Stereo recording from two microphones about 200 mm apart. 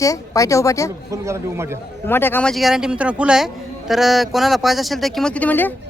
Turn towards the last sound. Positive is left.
turn(degrees=10)  # may be behind; listen again after turning